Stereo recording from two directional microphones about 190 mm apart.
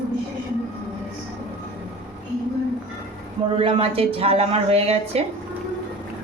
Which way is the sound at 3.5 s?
30° right (ahead or behind).